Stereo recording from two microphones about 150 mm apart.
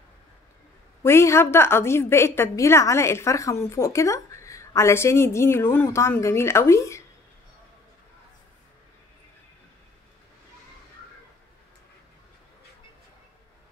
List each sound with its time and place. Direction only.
1.0 s a woman's voice: 15° left (ahead or behind)